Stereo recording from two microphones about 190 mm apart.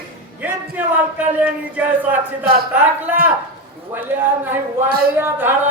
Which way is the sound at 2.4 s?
55° right (ahead or behind).